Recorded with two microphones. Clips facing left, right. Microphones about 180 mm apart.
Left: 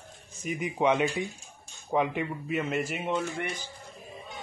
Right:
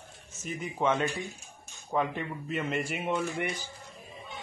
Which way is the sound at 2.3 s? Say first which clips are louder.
Left 2 dB; 5° left (ahead or behind).